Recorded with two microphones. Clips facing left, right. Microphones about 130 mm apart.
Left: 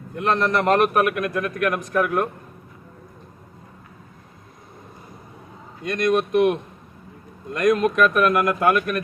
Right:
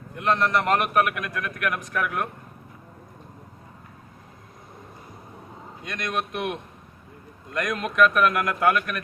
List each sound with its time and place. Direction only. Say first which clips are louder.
0.2 s a man's voice: left 2 dB; 40° left (ahead or behind)
5.8 s a man's voice: left 9 dB; 40° left (ahead or behind)